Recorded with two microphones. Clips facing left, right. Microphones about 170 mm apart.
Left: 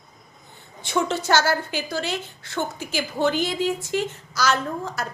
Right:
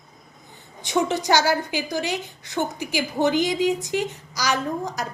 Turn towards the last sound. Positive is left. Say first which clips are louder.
# right 2 dB
turn(degrees=-15)  # may be behind; listen again after turning